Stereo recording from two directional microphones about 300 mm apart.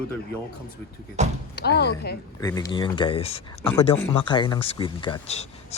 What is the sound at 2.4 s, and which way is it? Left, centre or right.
Speech, centre.